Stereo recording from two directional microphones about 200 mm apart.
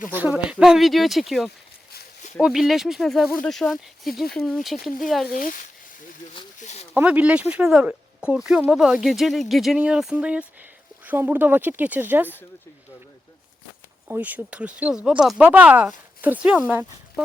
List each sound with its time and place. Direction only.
0.1 s speech: 5° right (ahead or behind)
5.2 s speech: 45° left (ahead or behind)
6.6 s a sound: 35° left (ahead or behind)
6.9 s speech: 5° right (ahead or behind)
14.1 s speech: 10° right (ahead or behind)